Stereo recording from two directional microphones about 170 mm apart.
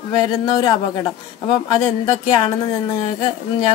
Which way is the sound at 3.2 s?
30° left (ahead or behind).